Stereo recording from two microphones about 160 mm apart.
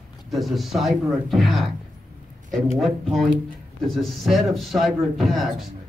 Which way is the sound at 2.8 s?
Centre (ahead or behind).